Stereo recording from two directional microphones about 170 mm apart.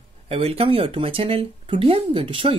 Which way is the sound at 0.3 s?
35° right (ahead or behind).